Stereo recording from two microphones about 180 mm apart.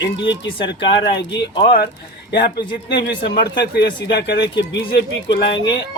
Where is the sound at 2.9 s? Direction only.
65° left (ahead or behind).